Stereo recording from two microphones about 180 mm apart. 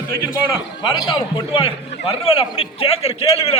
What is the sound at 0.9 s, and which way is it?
A man's voice, 20° left (ahead or behind).